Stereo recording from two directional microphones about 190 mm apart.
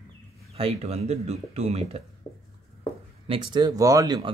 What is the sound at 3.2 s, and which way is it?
Speech, 30° right (ahead or behind).